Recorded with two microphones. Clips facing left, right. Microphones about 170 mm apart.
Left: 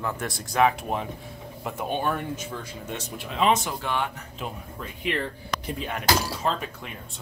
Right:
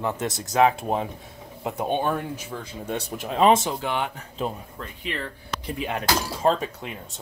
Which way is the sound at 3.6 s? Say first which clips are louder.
Right 2 dB; 20° right (ahead or behind).